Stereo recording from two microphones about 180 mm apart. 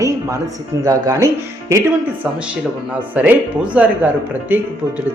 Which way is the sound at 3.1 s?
10° right (ahead or behind).